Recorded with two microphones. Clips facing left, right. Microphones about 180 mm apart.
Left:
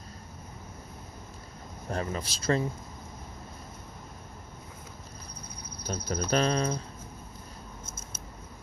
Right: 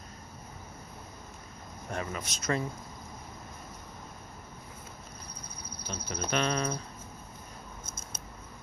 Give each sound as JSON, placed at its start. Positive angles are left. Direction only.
{"t": 1.9, "sound": "speech", "side_deg": 35}
{"t": 5.9, "sound": "speech", "side_deg": 40}